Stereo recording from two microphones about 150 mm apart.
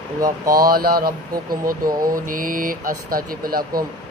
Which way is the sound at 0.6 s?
70° right (ahead or behind).